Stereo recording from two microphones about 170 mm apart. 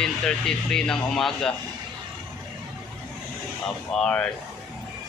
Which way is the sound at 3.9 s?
5° left (ahead or behind).